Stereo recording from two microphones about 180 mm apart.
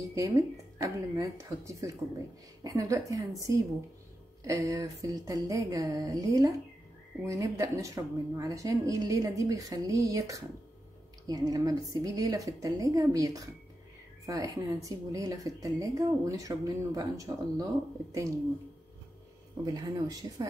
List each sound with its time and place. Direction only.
0.1 s a woman's voice: 20° right (ahead or behind)
19.6 s a woman's voice: 20° right (ahead or behind)